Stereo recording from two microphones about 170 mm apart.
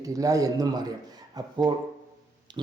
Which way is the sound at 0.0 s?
20° right (ahead or behind).